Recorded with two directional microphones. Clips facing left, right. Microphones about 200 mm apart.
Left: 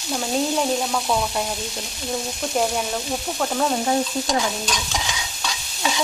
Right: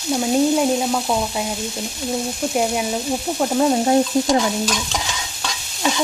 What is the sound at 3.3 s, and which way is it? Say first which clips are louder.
Stir: right 5 dB; 20° right (ahead or behind).